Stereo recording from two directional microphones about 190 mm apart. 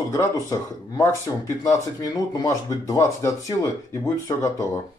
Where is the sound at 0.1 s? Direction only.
15° left (ahead or behind).